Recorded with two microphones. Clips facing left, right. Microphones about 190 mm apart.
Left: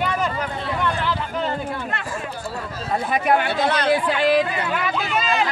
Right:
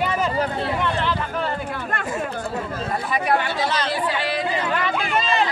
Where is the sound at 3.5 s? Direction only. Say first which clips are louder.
Left 4 dB; 60° left (ahead or behind).